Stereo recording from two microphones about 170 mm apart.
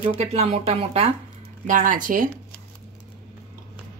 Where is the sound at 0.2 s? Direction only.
35° right (ahead or behind).